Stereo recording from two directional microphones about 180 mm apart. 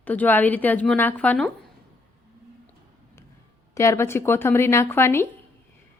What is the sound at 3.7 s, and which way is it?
A woman's voice, 15° left (ahead or behind).